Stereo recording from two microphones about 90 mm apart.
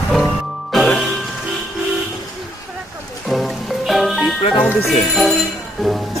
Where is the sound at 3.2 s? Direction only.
Centre (ahead or behind).